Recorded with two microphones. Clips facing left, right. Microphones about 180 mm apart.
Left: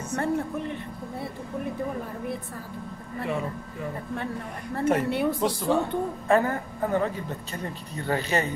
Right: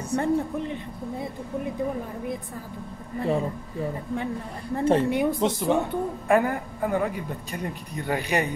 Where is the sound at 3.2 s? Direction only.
30° right (ahead or behind).